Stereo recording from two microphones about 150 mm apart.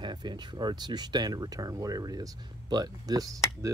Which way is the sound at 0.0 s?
30° right (ahead or behind).